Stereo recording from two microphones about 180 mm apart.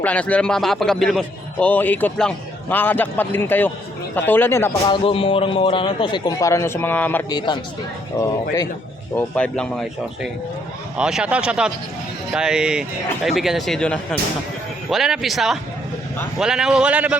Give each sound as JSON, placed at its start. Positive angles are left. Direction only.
{"t": 0.0, "sound": "a man's voice", "side_deg": 5}
{"t": 4.9, "sound": "a man's voice", "side_deg": 30}
{"t": 7.3, "sound": "a man's voice", "side_deg": 25}
{"t": 10.9, "sound": "speech", "side_deg": -5}